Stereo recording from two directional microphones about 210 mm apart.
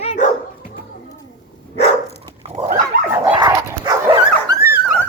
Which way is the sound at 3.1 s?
15° right (ahead or behind).